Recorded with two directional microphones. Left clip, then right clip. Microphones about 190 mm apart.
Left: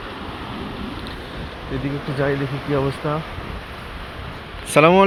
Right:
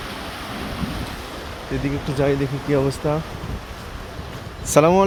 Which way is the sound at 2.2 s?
30° right (ahead or behind).